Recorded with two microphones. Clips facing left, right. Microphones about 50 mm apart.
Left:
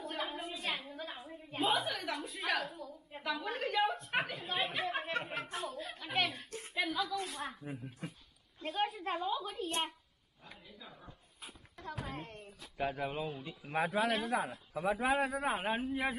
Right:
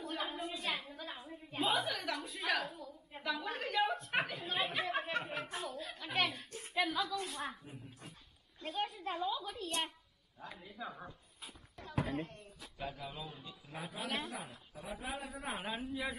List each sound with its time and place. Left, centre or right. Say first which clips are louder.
0.0 s a sound: left 1 dB; centre
1.6 s a woman's voice: left 1 dB; centre
2.8 s a sound: left 2 dB; centre
8.5 s a child's voice: left 4 dB; centre
9.1 s a woman's voice: left 2 dB; left
10.4 s speech: right 7 dB; right
12.3 s speech: left 3 dB; left
13.7 s a man's voice: left 10 dB; left
15.5 s a man's voice: left 5 dB; left